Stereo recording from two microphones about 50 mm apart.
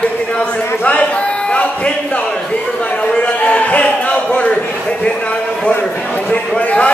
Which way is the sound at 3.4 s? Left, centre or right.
Left.